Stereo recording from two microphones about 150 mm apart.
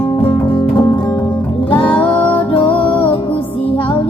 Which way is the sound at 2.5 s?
35° left (ahead or behind).